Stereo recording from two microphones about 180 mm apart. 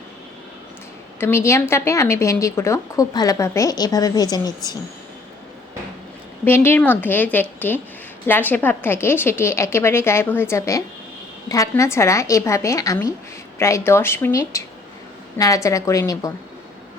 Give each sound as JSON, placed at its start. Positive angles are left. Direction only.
{"t": 1.2, "sound": "speech", "side_deg": 15}
{"t": 6.4, "sound": "speech", "side_deg": 10}